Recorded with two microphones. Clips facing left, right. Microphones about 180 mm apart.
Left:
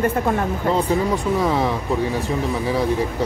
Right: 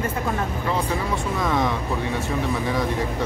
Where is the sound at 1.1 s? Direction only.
35° left (ahead or behind).